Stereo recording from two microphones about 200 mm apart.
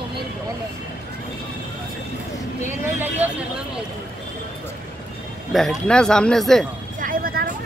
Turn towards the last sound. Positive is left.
turn(degrees=-45)  # may be behind; listen again after turning